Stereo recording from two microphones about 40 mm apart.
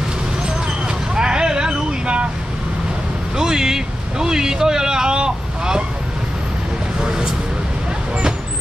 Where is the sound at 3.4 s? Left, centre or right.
Centre.